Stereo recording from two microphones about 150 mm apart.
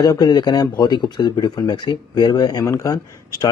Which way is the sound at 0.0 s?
25° left (ahead or behind).